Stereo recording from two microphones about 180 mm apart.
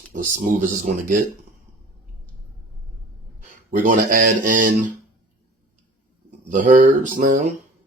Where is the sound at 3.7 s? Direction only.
50° right (ahead or behind).